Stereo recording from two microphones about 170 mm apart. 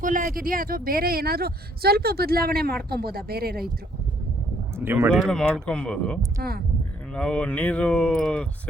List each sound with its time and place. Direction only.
0.0 s speech: 50° right (ahead or behind)
4.8 s speech: 15° right (ahead or behind)
5.1 s speech: 5° left (ahead or behind)
6.4 s speech: 60° right (ahead or behind)
7.1 s speech: 5° left (ahead or behind)